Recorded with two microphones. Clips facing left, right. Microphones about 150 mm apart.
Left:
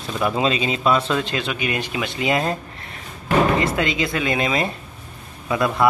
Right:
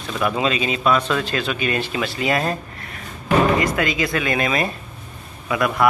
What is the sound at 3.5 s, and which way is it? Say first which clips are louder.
Speech: even; 25° left (ahead or behind).